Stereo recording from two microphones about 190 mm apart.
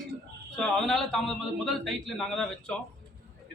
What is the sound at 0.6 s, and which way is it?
A man's voice, centre (ahead or behind).